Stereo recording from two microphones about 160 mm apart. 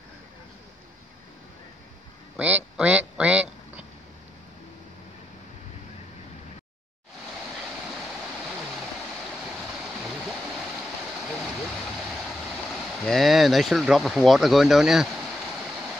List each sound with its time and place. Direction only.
2.3 s quack: 10° right (ahead or behind)
12.8 s speech: centre (ahead or behind)